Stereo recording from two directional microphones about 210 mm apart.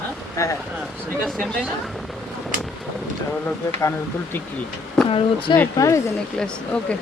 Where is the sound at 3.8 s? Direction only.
10° left (ahead or behind).